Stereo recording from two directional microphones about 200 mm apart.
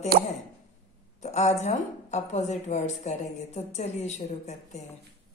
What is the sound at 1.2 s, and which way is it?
A woman's voice, 35° left (ahead or behind).